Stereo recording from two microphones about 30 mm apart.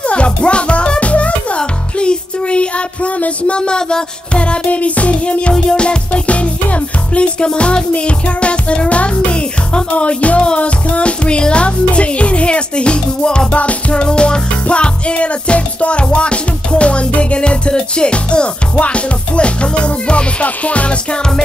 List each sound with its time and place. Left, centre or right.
0.1 s music: left
1.6 s music: left
4.6 s music: left
5.5 s music: left
6.2 s music: left
13.6 s music: left
14.0 s music: left